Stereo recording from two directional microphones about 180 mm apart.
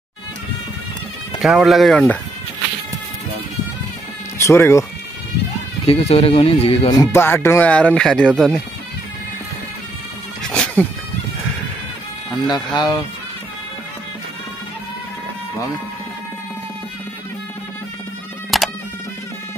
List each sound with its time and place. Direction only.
1.4 s speech: centre (ahead or behind)
4.4 s speech: 15° left (ahead or behind)
5.9 s speech: 35° left (ahead or behind); by 8.3 s 5° left (ahead or behind)
10.4 s a sound: 5° left (ahead or behind)
12.4 s speech: 25° left (ahead or behind)
18.5 s music: centre (ahead or behind)